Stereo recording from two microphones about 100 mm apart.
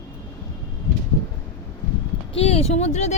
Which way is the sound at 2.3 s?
90° left.